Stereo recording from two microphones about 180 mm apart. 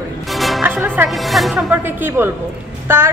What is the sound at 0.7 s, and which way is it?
A woman's voice, 10° right (ahead or behind).